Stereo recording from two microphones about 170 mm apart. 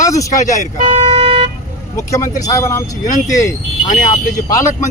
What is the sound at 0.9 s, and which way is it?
Vehicle, 30° right (ahead or behind).